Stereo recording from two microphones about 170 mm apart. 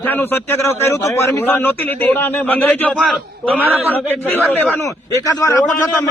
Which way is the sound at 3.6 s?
10° right (ahead or behind).